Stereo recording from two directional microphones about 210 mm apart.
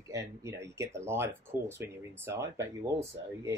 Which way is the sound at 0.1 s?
15° right (ahead or behind).